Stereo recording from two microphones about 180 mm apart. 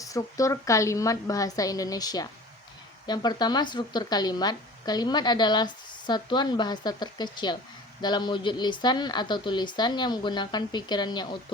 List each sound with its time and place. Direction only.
0.0 s speech: 20° left (ahead or behind)